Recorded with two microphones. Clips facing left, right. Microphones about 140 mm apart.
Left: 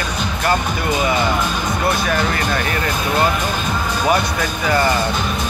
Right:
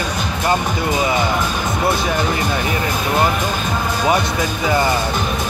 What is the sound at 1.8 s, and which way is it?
Speech, 20° right (ahead or behind).